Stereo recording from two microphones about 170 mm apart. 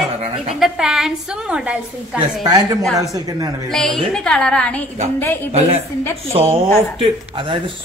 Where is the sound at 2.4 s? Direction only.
20° right (ahead or behind).